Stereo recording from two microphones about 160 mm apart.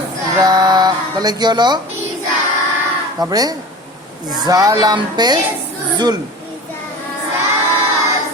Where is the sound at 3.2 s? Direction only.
25° right (ahead or behind).